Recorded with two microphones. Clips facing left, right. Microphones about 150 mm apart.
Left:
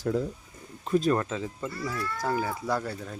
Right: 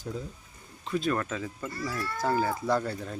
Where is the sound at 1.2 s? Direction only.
20° left (ahead or behind).